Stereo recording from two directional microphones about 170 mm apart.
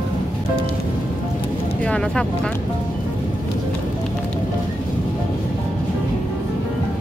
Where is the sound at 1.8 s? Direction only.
5° left (ahead or behind).